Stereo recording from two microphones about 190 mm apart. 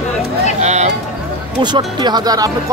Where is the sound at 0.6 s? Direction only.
35° right (ahead or behind).